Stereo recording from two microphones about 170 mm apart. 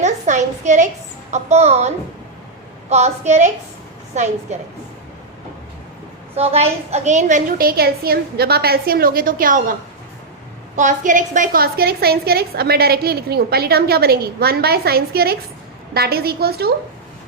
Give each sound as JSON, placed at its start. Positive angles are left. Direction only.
{"t": 0.0, "sound": "a sound", "side_deg": -45}
{"t": 1.3, "sound": "a woman's voice", "side_deg": -40}
{"t": 2.9, "sound": "a woman's voice", "side_deg": -40}
{"t": 6.3, "sound": "a woman's voice", "side_deg": -35}
{"t": 10.8, "sound": "a woman's voice", "side_deg": -45}